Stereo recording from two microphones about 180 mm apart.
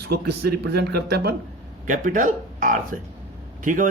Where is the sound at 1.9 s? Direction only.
45° right (ahead or behind).